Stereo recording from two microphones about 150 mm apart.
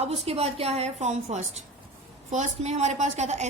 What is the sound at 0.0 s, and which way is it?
A woman's voice, 45° right (ahead or behind).